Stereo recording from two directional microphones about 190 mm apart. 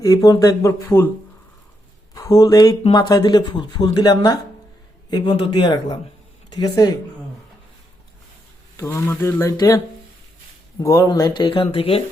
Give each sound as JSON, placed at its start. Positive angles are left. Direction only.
{"t": 0.0, "sound": "speech", "side_deg": 20}
{"t": 2.1, "sound": "speech", "side_deg": 20}
{"t": 8.7, "sound": "speech", "side_deg": 15}